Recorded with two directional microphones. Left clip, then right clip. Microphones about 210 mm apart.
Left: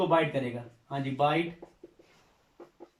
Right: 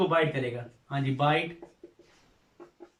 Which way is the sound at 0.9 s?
15° left (ahead or behind).